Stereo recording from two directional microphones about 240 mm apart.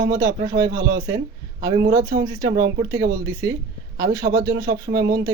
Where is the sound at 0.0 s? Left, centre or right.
Centre.